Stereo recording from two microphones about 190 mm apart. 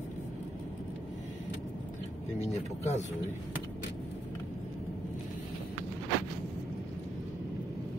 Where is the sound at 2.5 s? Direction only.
35° left (ahead or behind).